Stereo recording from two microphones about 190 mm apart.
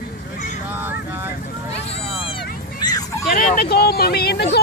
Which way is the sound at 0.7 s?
10° right (ahead or behind).